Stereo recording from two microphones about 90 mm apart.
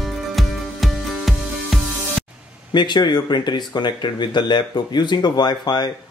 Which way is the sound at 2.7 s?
55° left (ahead or behind).